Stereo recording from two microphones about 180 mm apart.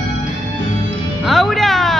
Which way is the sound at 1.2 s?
Centre (ahead or behind).